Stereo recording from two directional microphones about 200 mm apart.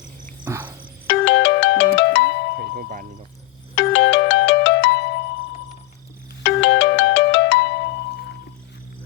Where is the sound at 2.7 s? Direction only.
45° right (ahead or behind).